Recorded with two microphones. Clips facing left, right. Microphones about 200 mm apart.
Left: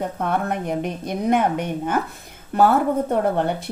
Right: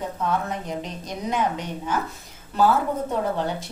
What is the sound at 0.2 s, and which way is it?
A woman's voice, 60° left (ahead or behind).